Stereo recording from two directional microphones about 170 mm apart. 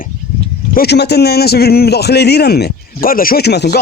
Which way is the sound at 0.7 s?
75° left (ahead or behind).